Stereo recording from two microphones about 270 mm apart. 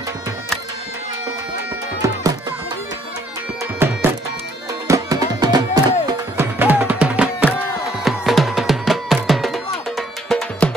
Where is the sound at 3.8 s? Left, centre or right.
Centre.